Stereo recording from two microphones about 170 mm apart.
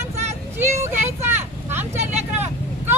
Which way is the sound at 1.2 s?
15° right (ahead or behind).